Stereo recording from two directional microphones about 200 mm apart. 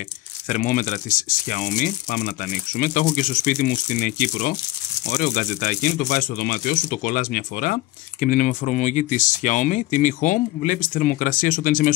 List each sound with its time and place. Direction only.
0.5 s speech: 40° left (ahead or behind)